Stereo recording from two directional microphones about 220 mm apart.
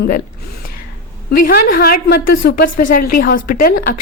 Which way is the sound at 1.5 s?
40° left (ahead or behind).